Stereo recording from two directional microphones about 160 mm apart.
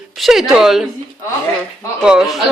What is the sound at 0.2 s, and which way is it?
Speech, centre (ahead or behind).